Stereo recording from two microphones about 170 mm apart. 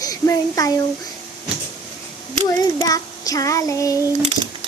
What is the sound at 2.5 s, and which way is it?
Child singing, 20° left (ahead or behind).